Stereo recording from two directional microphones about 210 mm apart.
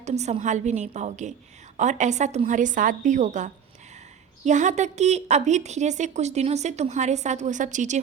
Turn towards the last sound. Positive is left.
turn(degrees=-35)  # may be behind; listen again after turning